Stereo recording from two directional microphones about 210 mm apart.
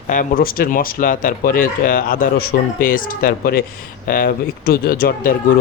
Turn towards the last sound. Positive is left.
turn(degrees=45)  # may be behind; listen again after turning